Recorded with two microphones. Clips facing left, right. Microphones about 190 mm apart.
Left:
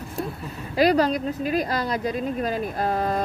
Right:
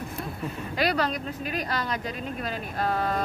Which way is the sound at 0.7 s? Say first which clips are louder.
Left 8 dB; 40° left (ahead or behind).